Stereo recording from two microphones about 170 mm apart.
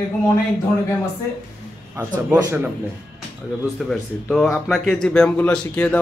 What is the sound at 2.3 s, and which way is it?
Speech, 20° right (ahead or behind).